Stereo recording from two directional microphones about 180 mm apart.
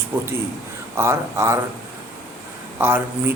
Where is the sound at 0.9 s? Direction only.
15° right (ahead or behind).